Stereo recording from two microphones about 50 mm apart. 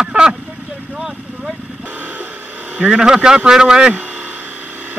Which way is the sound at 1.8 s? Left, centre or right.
Right.